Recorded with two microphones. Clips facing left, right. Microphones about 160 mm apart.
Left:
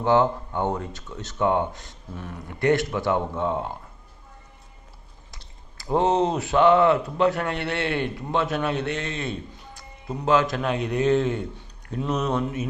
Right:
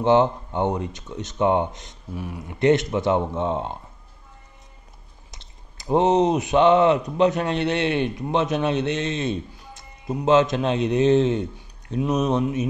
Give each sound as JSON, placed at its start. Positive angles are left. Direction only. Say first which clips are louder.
{"t": 0.0, "sound": "speech", "louder": "right 2 dB", "side_deg": -20}
{"t": 5.3, "sound": "speech", "louder": "right 1 dB", "side_deg": -20}